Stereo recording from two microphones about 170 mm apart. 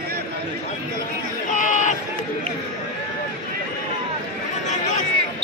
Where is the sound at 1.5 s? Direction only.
45° left (ahead or behind).